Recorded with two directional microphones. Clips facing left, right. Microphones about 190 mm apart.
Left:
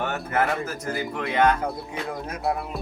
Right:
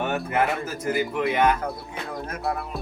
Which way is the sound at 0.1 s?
15° right (ahead or behind).